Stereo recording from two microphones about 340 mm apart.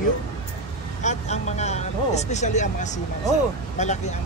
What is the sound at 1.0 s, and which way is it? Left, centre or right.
Speech, centre.